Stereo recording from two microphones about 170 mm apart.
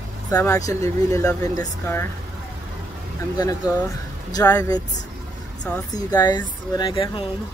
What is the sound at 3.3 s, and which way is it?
Speech, 20° left (ahead or behind).